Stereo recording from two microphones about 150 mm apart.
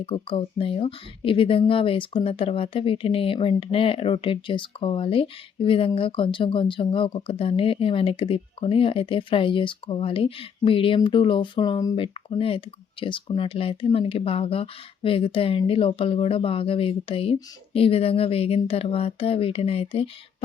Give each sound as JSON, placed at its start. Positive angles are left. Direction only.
{"t": 0.0, "sound": "speech", "side_deg": 40}